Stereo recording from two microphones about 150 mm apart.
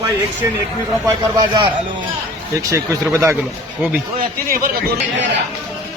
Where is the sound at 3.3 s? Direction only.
10° right (ahead or behind).